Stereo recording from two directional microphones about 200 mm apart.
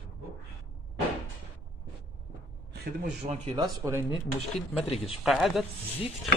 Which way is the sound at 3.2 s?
30° right (ahead or behind).